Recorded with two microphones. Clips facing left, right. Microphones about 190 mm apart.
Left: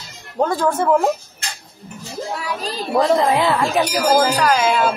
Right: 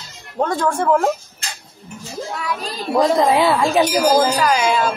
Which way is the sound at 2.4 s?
35° left (ahead or behind).